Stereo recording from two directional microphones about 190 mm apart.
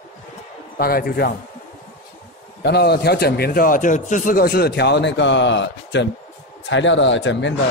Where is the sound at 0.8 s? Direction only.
50° left (ahead or behind).